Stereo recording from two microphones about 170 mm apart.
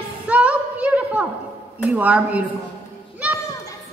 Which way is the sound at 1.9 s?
5° right (ahead or behind).